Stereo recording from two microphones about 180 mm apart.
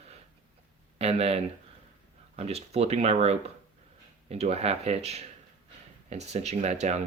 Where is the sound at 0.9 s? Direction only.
35° right (ahead or behind).